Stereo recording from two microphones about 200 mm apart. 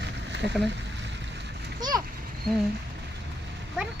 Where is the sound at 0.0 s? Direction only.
60° right (ahead or behind).